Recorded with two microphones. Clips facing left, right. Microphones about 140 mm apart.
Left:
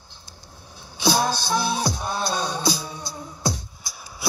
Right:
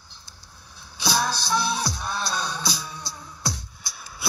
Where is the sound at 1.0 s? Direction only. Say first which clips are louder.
Left 4 dB; 45° left (ahead or behind).